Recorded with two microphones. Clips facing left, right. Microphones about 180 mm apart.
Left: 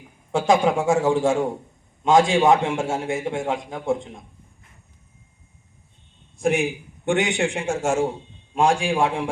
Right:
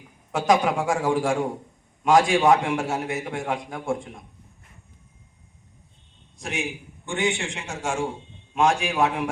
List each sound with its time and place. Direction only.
0.3 s a man's voice: 25° left (ahead or behind)
6.4 s a man's voice: 55° left (ahead or behind)
8.5 s a man's voice: 30° left (ahead or behind)